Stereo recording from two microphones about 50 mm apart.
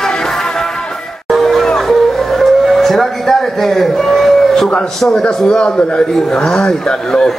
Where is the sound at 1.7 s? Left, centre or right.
Centre.